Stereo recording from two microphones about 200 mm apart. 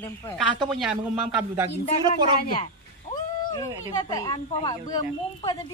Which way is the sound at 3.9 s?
20° left (ahead or behind).